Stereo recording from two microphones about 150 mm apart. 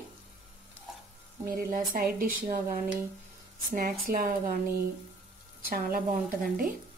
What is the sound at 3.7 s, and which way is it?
Speech, 80° right.